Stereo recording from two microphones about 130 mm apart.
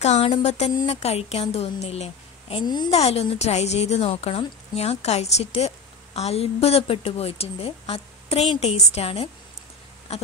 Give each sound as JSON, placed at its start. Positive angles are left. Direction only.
{"t": 0.0, "sound": "a woman's voice", "side_deg": 60}
{"t": 2.6, "sound": "a woman's voice", "side_deg": 35}
{"t": 2.9, "sound": "a woman's voice", "side_deg": 55}
{"t": 10.1, "sound": "a sound", "side_deg": 55}